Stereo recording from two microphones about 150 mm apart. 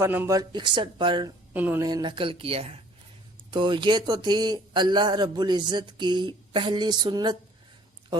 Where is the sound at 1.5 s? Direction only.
10° right (ahead or behind).